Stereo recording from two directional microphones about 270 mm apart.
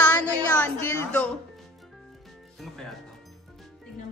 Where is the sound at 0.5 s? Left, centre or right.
Centre.